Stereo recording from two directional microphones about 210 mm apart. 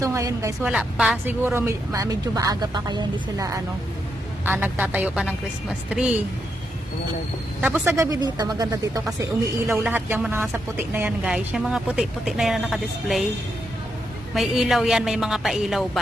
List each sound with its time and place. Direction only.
0.0 s a woman's voice: 15° right (ahead or behind)
0.7 s a woman's voice: 5° right (ahead or behind)
7.6 s a woman's voice: 10° right (ahead or behind)
14.3 s a woman's voice: centre (ahead or behind)